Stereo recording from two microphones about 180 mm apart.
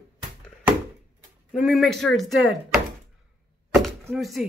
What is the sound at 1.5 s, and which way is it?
A woman's voice, centre (ahead or behind).